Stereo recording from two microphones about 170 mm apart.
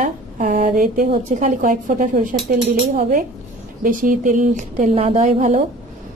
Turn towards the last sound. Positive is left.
turn(degrees=-45)  # may be behind; listen again after turning